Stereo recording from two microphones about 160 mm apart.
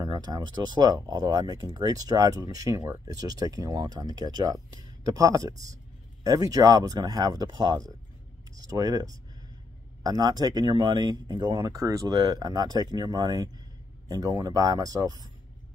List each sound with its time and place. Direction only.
0.0 s speech: 25° right (ahead or behind)